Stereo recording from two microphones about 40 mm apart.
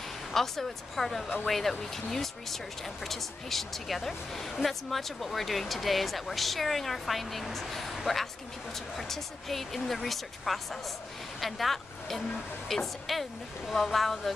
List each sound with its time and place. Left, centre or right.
0.3 s speech: centre